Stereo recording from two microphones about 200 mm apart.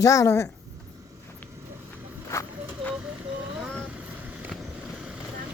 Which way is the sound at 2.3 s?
15° left (ahead or behind).